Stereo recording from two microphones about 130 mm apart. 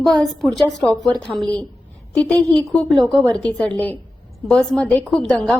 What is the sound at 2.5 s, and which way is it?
A woman's voice, 5° left (ahead or behind).